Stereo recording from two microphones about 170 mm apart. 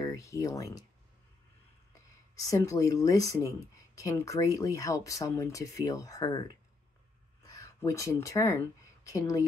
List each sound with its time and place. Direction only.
0.0 s speech: 20° left (ahead or behind)
2.3 s speech: 20° left (ahead or behind)